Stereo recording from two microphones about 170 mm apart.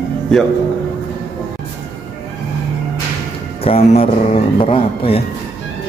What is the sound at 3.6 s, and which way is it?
Speech, 35° left (ahead or behind).